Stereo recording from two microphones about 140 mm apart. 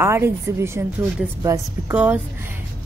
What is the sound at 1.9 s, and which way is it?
Speech, 10° right (ahead or behind).